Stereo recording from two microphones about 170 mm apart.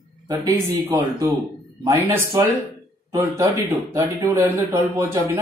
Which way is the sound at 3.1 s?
15° right (ahead or behind).